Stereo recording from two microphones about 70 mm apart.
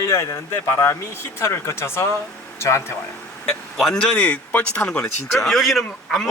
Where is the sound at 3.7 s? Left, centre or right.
Centre.